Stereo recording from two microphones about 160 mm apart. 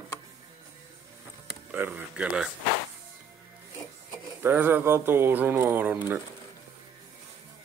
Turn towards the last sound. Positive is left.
turn(degrees=-10)  # may be behind; listen again after turning